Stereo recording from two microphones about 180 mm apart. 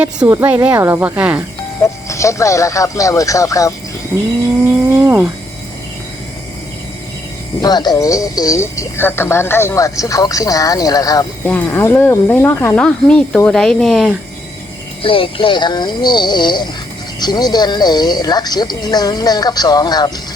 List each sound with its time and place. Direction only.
0.0 s speech: 10° right (ahead or behind)
1.8 s speech: 15° left (ahead or behind)
4.9 s speech: 15° right (ahead or behind)
7.6 s speech: 20° left (ahead or behind); by 14.2 s centre (ahead or behind)
15.0 s speech: 30° left (ahead or behind)